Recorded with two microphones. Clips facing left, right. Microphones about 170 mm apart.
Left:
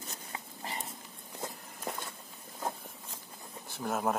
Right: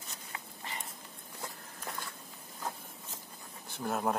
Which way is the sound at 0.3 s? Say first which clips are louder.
Left 2 dB; 35° left (ahead or behind).